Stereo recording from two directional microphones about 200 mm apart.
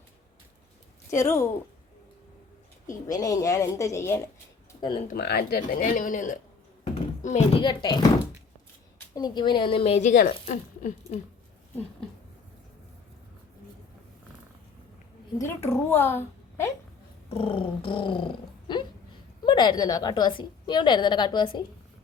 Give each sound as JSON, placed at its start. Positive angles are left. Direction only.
{"t": 1.1, "sound": "a woman's voice", "side_deg": 15}
{"t": 2.8, "sound": "a woman's voice", "side_deg": 20}
{"t": 4.8, "sound": "speech", "side_deg": 25}
{"t": 5.1, "sound": "a child's voice", "side_deg": 55}
{"t": 9.1, "sound": "a woman's voice", "side_deg": 20}
{"t": 15.4, "sound": "a woman's voice", "side_deg": 10}
{"t": 17.2, "sound": "a sound", "side_deg": 30}
{"t": 19.5, "sound": "a woman's voice", "side_deg": 20}